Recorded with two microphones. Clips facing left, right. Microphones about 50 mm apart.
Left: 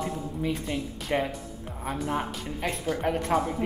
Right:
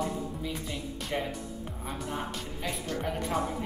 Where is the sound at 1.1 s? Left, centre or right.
Left.